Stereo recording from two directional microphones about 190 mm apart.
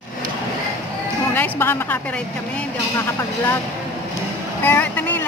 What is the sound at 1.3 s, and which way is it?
Speech, 10° left (ahead or behind).